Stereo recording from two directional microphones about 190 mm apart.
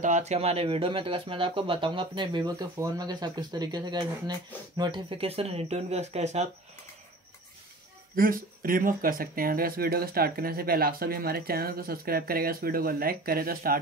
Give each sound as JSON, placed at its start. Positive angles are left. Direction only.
{"t": 0.0, "sound": "speech", "side_deg": -40}
{"t": 8.2, "sound": "speech", "side_deg": -50}